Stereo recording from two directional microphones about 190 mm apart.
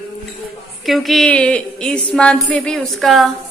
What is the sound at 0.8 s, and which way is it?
A woman's voice, centre (ahead or behind).